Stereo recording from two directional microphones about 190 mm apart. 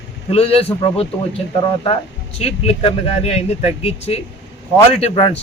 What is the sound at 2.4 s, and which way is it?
A man's voice, 30° left (ahead or behind).